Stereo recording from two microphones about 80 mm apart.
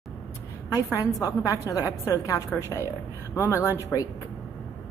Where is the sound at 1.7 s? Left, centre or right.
Left.